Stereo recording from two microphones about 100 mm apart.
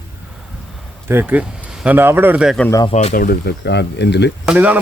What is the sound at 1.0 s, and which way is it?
Speech, 20° right (ahead or behind).